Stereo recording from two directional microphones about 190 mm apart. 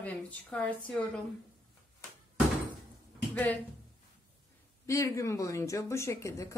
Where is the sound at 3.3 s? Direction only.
10° left (ahead or behind).